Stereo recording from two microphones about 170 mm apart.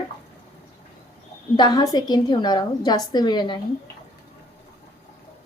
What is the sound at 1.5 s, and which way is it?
A woman's voice, 25° left (ahead or behind).